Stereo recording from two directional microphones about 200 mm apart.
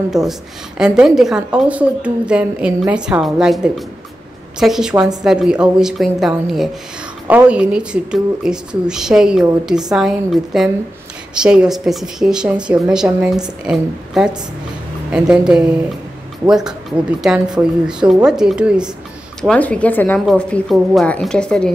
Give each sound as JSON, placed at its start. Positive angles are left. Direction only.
{"t": 0.1, "sound": "a woman's voice", "side_deg": 0}